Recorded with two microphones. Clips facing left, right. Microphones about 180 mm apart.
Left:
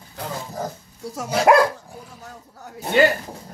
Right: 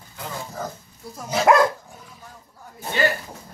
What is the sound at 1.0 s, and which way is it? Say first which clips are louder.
Speech: left 6 dB; 80° left.